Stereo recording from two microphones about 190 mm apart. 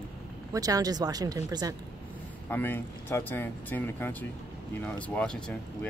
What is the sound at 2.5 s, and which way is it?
Speech, 10° left (ahead or behind).